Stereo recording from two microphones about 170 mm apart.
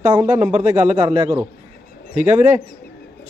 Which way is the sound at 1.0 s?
20° right (ahead or behind).